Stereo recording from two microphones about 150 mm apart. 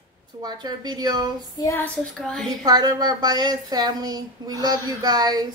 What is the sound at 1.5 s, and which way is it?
A woman's voice, 15° left (ahead or behind).